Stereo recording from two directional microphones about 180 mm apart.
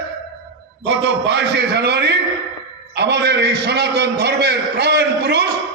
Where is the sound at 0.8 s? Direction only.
80° right.